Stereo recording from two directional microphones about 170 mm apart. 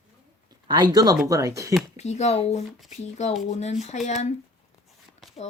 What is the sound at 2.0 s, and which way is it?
Speech, 40° left (ahead or behind).